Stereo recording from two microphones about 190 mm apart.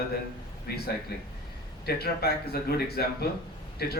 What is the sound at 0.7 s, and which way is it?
A man's voice, 55° left (ahead or behind).